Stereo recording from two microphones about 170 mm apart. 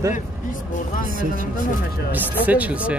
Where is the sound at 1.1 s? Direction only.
55° right (ahead or behind).